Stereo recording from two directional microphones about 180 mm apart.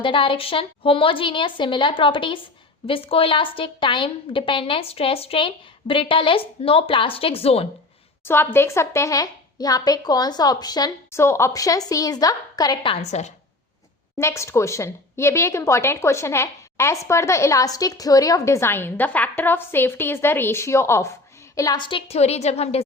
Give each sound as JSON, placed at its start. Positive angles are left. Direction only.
{"t": 0.0, "sound": "a woman's voice", "side_deg": 30}
{"t": 8.2, "sound": "a woman's voice", "side_deg": 10}
{"t": 14.2, "sound": "a woman's voice", "side_deg": 15}